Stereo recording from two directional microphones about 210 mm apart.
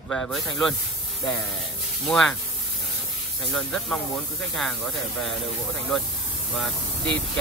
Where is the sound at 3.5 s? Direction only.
Centre (ahead or behind).